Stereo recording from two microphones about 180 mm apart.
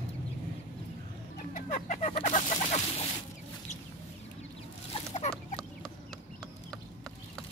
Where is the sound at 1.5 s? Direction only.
45° left (ahead or behind).